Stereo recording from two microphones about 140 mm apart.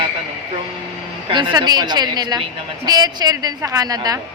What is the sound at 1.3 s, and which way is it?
A woman's voice, 30° right (ahead or behind).